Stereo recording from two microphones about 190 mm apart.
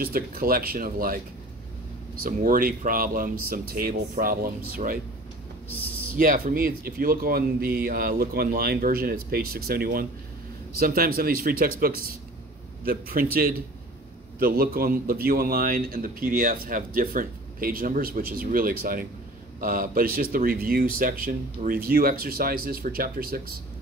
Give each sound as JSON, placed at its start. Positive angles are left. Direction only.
{"t": 0.0, "sound": "a man's voice", "side_deg": -50}
{"t": 2.2, "sound": "a man's voice", "side_deg": -50}
{"t": 6.1, "sound": "a man's voice", "side_deg": -50}
{"t": 12.8, "sound": "a man's voice", "side_deg": -50}